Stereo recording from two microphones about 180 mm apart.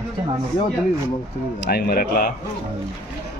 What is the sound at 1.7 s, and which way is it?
Speech, 55° left (ahead or behind).